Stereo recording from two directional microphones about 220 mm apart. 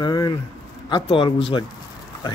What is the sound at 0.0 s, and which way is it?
A man's voice, 20° left (ahead or behind).